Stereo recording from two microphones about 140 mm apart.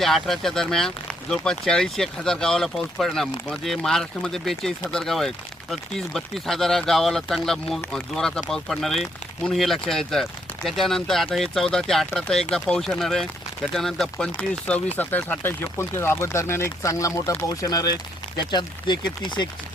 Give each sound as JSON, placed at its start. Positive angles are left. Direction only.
{"t": 0.0, "sound": "speech", "side_deg": 0}